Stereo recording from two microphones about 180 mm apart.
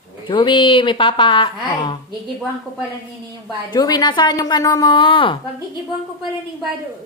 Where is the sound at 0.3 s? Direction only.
25° left (ahead or behind).